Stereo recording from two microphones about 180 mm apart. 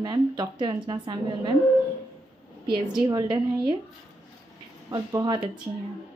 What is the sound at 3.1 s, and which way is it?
Speech, 25° right (ahead or behind).